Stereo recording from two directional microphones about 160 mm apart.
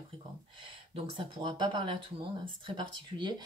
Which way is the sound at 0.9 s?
30° right (ahead or behind).